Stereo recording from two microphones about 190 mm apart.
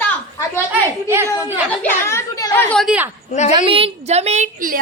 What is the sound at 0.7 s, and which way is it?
Speech, 15° right (ahead or behind).